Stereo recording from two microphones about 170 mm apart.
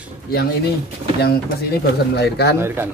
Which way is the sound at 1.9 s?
75° left (ahead or behind).